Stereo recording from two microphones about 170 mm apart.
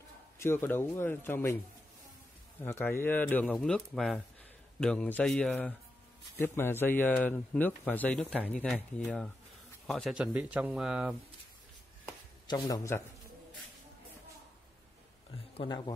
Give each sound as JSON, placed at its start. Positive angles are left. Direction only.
{"t": 0.4, "sound": "speech", "side_deg": 15}
{"t": 2.6, "sound": "speech", "side_deg": 10}
{"t": 10.1, "sound": "speech", "side_deg": -5}
{"t": 12.4, "sound": "a man's voice", "side_deg": 20}
{"t": 15.5, "sound": "speech", "side_deg": 30}